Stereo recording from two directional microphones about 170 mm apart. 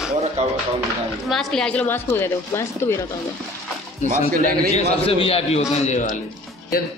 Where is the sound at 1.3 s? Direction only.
Centre (ahead or behind).